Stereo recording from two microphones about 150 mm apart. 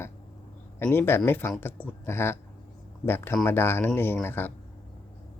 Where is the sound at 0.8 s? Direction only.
15° left (ahead or behind).